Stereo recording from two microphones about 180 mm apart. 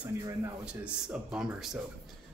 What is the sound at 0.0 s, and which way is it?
A man's voice, 5° right (ahead or behind).